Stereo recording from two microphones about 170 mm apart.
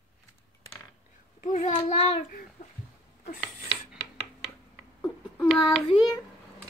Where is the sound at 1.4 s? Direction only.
50° left (ahead or behind).